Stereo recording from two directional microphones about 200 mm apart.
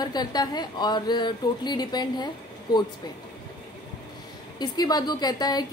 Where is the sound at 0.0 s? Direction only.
20° left (ahead or behind).